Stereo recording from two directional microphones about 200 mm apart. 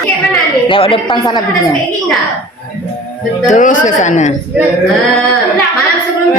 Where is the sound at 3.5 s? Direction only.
40° left (ahead or behind).